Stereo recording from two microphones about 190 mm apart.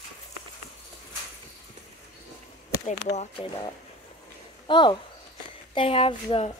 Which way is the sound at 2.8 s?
35° left (ahead or behind).